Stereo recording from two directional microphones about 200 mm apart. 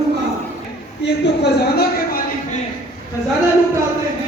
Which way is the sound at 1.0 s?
60° left (ahead or behind).